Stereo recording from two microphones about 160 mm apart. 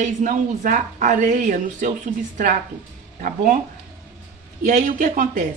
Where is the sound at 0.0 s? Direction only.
50° right (ahead or behind).